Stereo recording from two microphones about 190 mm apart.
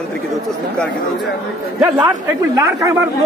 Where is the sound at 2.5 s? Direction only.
15° right (ahead or behind).